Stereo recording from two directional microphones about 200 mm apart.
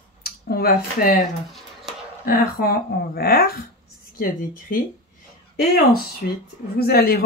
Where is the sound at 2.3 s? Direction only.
45° left (ahead or behind).